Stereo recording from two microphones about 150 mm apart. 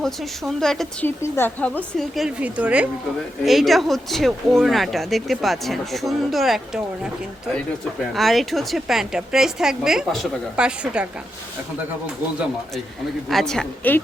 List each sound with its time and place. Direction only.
0.0 s speech: centre (ahead or behind)
1.0 s speech: 15° left (ahead or behind)
8.1 s speech: centre (ahead or behind)
13.2 s speech: centre (ahead or behind)